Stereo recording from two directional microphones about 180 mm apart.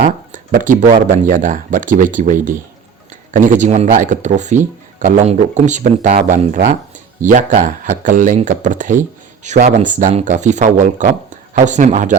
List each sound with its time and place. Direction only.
0.0 s speech: 45° right (ahead or behind)